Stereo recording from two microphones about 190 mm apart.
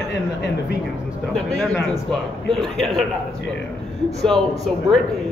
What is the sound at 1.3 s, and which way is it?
Speech, centre (ahead or behind).